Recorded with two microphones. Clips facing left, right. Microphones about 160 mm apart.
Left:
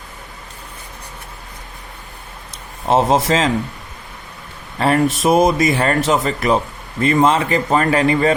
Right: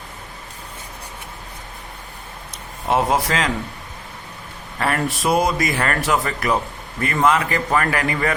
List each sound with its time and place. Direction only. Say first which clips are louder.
2.8 s speech: left 4 dB; 25° left (ahead or behind)
4.8 s speech: left 6 dB; 25° left (ahead or behind)